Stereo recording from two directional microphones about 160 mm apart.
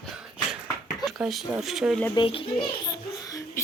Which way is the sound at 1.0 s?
Centre (ahead or behind).